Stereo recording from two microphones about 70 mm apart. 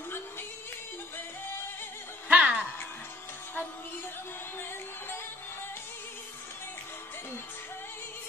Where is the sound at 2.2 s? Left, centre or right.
Centre.